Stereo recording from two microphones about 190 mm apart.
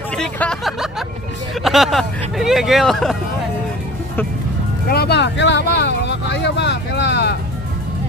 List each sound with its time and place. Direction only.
0.1 s hubbub: 5° left (ahead or behind)
1.6 s speech: centre (ahead or behind)
4.8 s speech: 55° left (ahead or behind)